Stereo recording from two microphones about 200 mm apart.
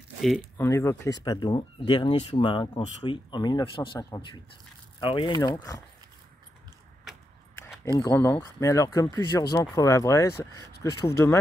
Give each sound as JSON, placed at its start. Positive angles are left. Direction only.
{"t": 0.6, "sound": "speech", "side_deg": 15}
{"t": 8.0, "sound": "speech", "side_deg": 15}